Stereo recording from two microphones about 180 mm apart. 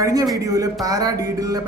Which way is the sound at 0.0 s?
20° right (ahead or behind).